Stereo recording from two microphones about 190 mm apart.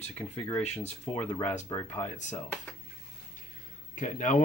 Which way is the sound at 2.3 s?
10° left (ahead or behind).